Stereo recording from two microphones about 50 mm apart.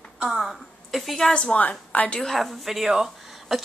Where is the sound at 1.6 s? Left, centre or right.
Left.